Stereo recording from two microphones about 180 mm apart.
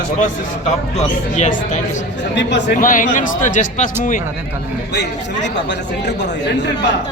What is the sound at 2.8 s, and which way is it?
Speech, 50° left (ahead or behind).